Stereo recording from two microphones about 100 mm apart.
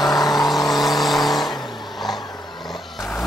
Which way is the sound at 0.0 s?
40° left (ahead or behind).